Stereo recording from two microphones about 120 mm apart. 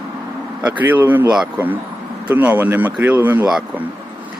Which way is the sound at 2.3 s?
15° right (ahead or behind).